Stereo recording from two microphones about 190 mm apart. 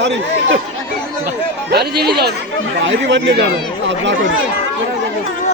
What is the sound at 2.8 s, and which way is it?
Speech, 75° right (ahead or behind).